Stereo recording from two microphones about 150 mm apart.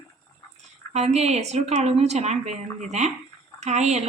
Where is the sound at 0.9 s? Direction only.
45° right (ahead or behind).